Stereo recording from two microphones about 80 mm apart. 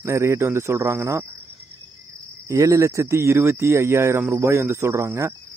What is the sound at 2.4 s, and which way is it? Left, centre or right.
Cricket, right.